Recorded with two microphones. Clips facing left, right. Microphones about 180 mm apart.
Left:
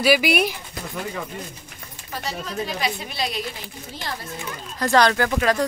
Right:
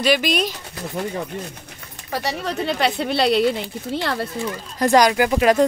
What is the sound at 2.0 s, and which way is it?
Speech, 75° right (ahead or behind).